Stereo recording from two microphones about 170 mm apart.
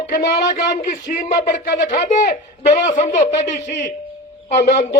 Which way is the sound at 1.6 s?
75° left (ahead or behind).